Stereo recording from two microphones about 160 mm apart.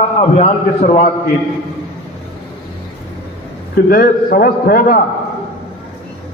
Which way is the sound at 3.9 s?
65° left (ahead or behind).